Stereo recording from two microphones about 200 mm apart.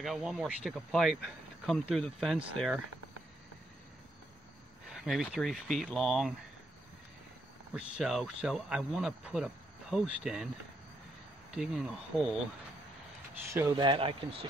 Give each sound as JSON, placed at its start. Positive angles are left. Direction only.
{"t": 0.0, "sound": "speech", "side_deg": 0}
{"t": 4.9, "sound": "speech", "side_deg": 0}
{"t": 7.7, "sound": "speech", "side_deg": 0}
{"t": 11.5, "sound": "speech", "side_deg": -5}
{"t": 13.5, "sound": "speech", "side_deg": -10}
{"t": 13.7, "sound": "speech", "side_deg": -25}